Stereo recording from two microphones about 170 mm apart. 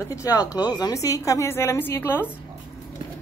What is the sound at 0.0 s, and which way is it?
A woman's voice, 20° left (ahead or behind).